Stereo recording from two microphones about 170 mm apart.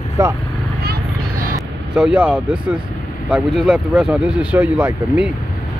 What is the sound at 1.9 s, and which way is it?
Speech, 5° right (ahead or behind).